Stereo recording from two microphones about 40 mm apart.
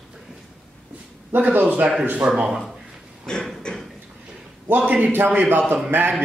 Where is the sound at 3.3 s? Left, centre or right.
Centre.